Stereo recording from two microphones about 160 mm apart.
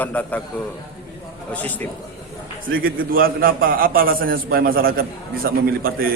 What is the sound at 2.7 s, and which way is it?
A man's voice, 65° right (ahead or behind).